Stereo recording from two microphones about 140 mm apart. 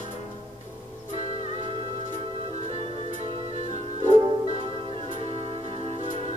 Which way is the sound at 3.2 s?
45° right (ahead or behind).